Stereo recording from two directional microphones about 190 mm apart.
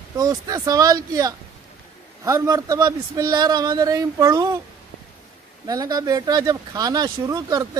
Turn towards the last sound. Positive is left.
turn(degrees=-20)  # may be behind; listen again after turning